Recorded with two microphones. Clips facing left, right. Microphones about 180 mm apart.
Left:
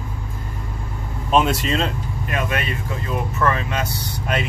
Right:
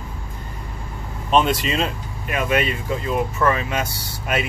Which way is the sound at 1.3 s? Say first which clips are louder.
Even; centre (ahead or behind).